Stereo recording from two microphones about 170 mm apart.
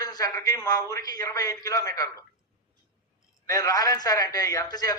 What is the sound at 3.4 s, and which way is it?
A man's voice, 20° left (ahead or behind).